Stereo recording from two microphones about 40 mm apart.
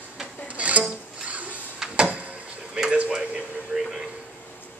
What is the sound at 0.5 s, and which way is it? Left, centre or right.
Music, right.